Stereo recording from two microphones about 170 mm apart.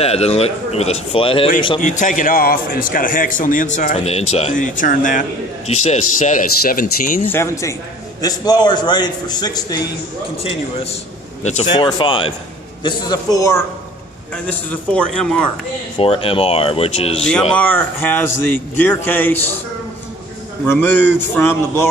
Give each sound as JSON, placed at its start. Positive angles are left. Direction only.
{"t": 0.0, "sound": "a man's voice", "side_deg": 35}
{"t": 1.8, "sound": "a man's voice", "side_deg": 45}
{"t": 7.2, "sound": "a man's voice", "side_deg": 15}
{"t": 11.4, "sound": "a man's voice", "side_deg": 40}
{"t": 11.7, "sound": "a man's voice", "side_deg": 30}
{"t": 14.3, "sound": "speech", "side_deg": 10}
{"t": 16.0, "sound": "a man's voice", "side_deg": 35}
{"t": 17.3, "sound": "speech", "side_deg": 5}
{"t": 20.6, "sound": "speech", "side_deg": 10}